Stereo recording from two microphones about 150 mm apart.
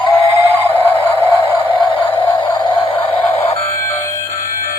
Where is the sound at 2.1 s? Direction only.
35° left (ahead or behind).